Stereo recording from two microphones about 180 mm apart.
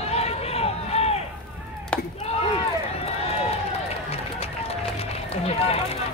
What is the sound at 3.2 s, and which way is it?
Run, 35° left (ahead or behind).